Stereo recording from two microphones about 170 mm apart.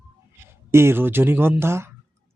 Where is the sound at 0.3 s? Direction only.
15° right (ahead or behind).